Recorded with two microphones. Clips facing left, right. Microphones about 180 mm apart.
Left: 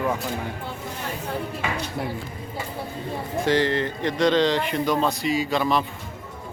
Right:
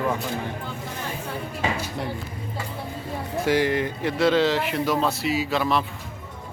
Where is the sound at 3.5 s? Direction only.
10° right (ahead or behind).